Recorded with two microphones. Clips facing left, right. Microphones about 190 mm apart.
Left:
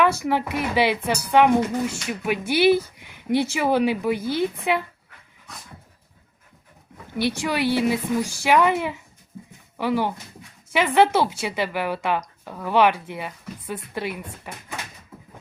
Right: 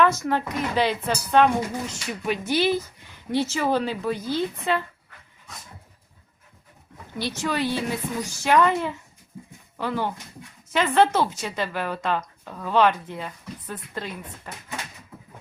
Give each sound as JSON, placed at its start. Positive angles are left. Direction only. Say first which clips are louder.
{"t": 0.0, "sound": "a woman's voice", "louder": "left 1 dB", "side_deg": 10}
{"t": 7.2, "sound": "a woman's voice", "louder": "left 3 dB", "side_deg": 15}